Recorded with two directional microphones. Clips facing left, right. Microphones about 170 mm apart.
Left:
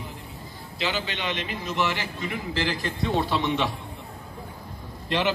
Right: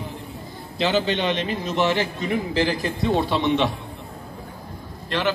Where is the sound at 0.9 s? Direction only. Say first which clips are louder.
Right 8 dB; 30° right (ahead or behind).